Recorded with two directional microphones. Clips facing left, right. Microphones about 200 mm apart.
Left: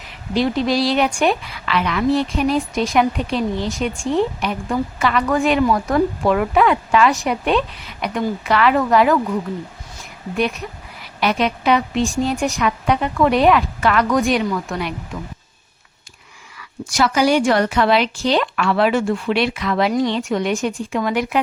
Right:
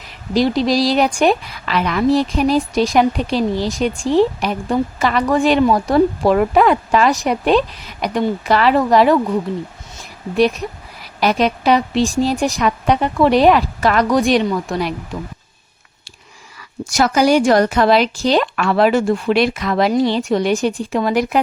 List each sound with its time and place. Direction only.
0.3 s a woman's voice: 35° right (ahead or behind)
11.2 s a woman's voice: 40° right (ahead or behind)
16.6 s a woman's voice: 40° right (ahead or behind)